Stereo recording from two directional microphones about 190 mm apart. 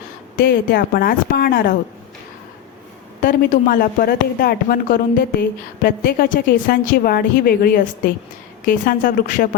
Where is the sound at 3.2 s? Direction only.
45° left (ahead or behind).